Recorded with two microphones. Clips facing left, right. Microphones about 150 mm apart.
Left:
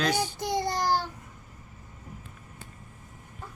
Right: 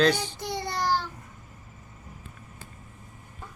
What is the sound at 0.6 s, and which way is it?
Child singing, 45° left (ahead or behind).